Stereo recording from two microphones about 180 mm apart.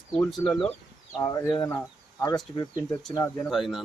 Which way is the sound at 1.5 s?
25° left (ahead or behind).